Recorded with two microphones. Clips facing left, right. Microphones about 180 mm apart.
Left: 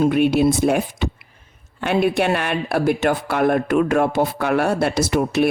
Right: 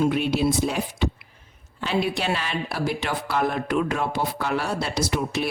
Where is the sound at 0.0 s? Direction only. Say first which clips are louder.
Left 6 dB; 55° left (ahead or behind).